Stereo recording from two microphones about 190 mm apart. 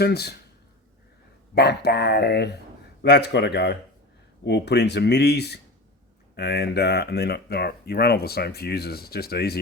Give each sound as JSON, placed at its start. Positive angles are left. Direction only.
{"t": 0.0, "sound": "speech", "side_deg": 60}
{"t": 1.5, "sound": "speech", "side_deg": 60}